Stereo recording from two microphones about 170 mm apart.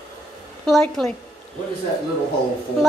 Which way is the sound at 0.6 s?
Centre (ahead or behind).